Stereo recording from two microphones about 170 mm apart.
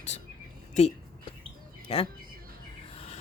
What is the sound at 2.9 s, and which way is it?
Rub, 35° left (ahead or behind).